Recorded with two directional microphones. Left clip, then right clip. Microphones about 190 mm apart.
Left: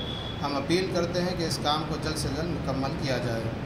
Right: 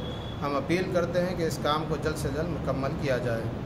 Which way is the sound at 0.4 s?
25° right (ahead or behind).